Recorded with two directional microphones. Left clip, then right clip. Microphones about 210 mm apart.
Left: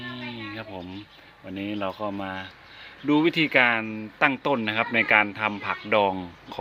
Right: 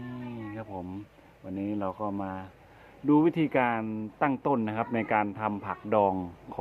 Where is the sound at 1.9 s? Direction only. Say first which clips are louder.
Left 3 dB; 20° left (ahead or behind).